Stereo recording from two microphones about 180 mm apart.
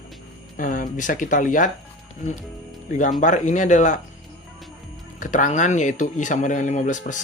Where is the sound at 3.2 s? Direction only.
40° left (ahead or behind).